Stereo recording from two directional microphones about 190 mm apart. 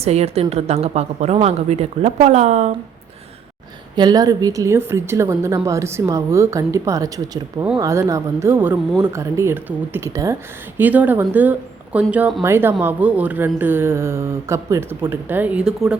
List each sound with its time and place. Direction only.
0.0 s a woman's voice: 35° right (ahead or behind)
3.9 s a woman's voice: 20° right (ahead or behind); by 16.0 s 5° right (ahead or behind)